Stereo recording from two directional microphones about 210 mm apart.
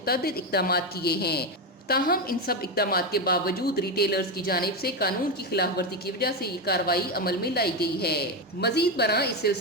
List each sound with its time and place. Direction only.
0.0 s a woman's voice: 45° left (ahead or behind)